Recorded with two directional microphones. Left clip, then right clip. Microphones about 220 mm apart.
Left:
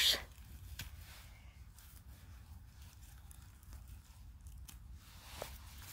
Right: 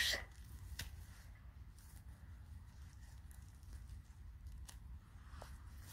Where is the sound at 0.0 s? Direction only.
15° left (ahead or behind).